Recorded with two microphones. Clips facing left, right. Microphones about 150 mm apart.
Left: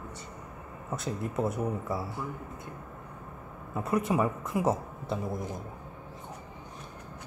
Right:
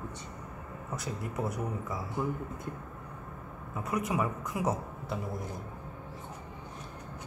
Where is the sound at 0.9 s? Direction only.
25° left (ahead or behind).